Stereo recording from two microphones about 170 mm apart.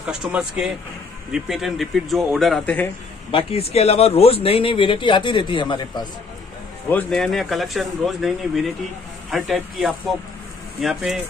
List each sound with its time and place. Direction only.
0.0 s speech: 5° right (ahead or behind)
3.3 s speech: 35° left (ahead or behind)
6.9 s speech: 5° left (ahead or behind)